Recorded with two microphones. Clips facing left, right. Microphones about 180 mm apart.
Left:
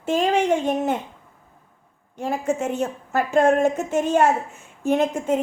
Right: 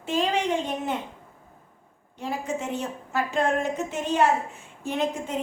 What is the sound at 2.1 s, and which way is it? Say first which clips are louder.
A woman's voice: left 6 dB; 50° left (ahead or behind).